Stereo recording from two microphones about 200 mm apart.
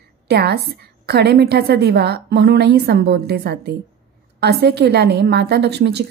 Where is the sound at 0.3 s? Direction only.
50° right (ahead or behind).